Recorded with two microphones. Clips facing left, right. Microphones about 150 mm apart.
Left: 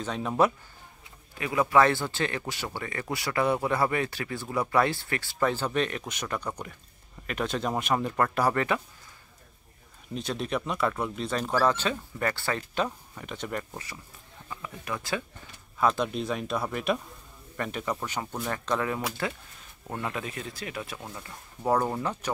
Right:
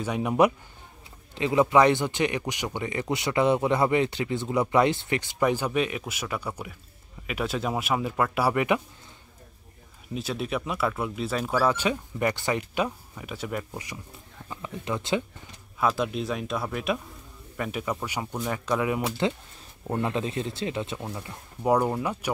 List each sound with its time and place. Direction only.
0.0 s speech: 10° right (ahead or behind)
1.3 s speech: 25° right (ahead or behind)
10.1 s speech: 5° right (ahead or behind)
14.5 s speech: 20° right (ahead or behind)
15.8 s speech: 5° right (ahead or behind)
18.9 s speech: 25° right (ahead or behind)